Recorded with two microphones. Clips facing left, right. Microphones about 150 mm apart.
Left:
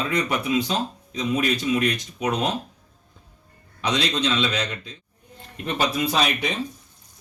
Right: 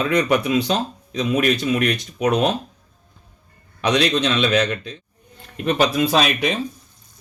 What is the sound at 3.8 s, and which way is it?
Speech, 70° right (ahead or behind).